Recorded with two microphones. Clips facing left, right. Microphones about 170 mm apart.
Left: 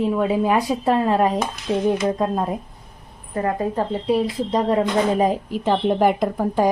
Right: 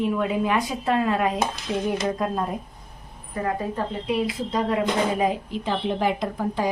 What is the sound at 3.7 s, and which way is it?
Speech, 35° left (ahead or behind).